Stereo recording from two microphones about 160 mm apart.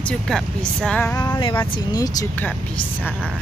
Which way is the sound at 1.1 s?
25° left (ahead or behind).